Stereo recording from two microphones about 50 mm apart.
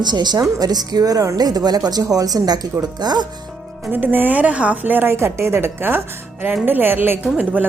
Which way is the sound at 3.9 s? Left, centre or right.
Right.